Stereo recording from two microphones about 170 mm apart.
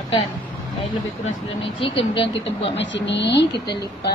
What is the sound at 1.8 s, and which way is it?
Speech, 30° left (ahead or behind).